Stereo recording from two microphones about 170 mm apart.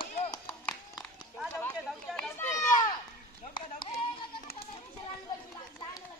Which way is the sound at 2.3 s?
15° left (ahead or behind).